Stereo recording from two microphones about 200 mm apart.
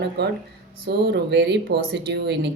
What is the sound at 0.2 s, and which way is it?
Speech, 60° right (ahead or behind).